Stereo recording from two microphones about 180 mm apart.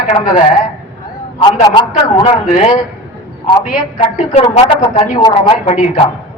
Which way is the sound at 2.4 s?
50° left (ahead or behind).